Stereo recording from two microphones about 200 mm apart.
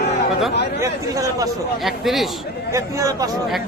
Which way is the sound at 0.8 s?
15° right (ahead or behind).